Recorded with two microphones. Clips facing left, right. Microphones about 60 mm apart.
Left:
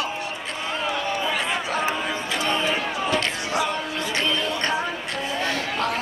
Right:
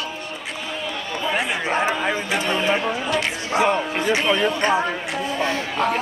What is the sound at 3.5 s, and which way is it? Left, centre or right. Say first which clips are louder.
Music: right 7 dB; right.